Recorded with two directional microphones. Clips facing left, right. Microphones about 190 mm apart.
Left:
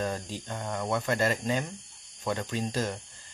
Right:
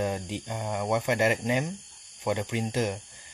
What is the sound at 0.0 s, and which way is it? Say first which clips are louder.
Speech: right 3 dB; 15° right (ahead or behind).